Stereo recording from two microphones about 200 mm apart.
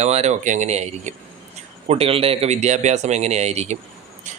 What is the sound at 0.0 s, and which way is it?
Speech, 35° right (ahead or behind).